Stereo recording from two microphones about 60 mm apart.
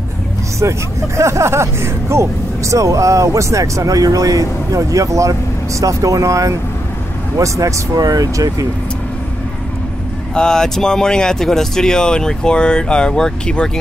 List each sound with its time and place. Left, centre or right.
0.6 s speech: right
10.3 s speech: centre